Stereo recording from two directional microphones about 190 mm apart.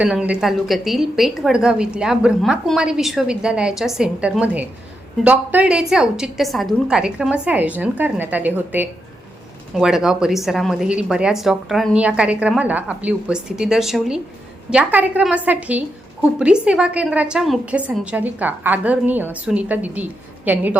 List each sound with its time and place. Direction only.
0.0 s a woman's voice: 5° right (ahead or behind)